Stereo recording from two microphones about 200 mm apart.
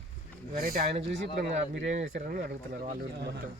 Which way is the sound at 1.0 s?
60° right (ahead or behind).